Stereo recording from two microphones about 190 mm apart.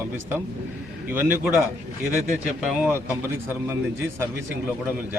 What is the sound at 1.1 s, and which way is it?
Speech, 10° right (ahead or behind).